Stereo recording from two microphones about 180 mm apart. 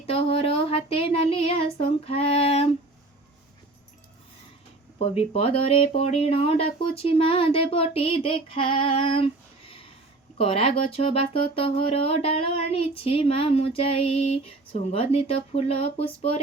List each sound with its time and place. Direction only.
0.0 s speech: 30° left (ahead or behind)
4.9 s speech: 35° left (ahead or behind)